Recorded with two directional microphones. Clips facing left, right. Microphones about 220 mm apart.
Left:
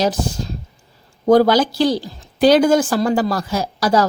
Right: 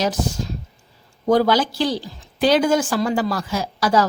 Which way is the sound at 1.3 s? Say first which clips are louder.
Left 4 dB; 40° left (ahead or behind).